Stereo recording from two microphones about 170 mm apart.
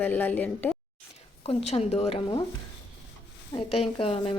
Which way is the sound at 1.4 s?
35° left (ahead or behind).